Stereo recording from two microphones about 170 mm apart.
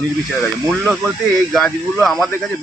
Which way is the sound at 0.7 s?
Centre (ahead or behind).